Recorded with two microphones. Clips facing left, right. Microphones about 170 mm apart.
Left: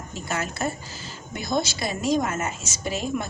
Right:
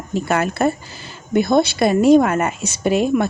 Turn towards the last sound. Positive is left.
turn(degrees=-60)  # may be behind; listen again after turning